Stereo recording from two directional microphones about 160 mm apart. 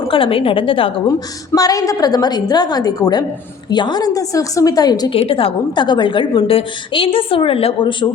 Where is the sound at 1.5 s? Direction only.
20° left (ahead or behind).